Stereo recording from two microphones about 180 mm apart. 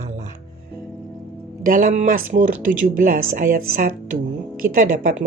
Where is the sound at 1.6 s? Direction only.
50° right (ahead or behind).